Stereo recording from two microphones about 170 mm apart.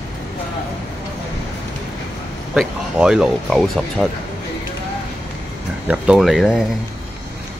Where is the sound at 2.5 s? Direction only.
5° right (ahead or behind).